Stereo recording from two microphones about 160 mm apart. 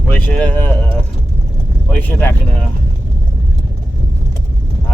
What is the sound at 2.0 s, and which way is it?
Speech, 10° left (ahead or behind).